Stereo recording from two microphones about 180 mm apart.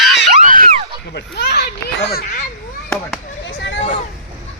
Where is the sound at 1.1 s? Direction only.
70° left (ahead or behind).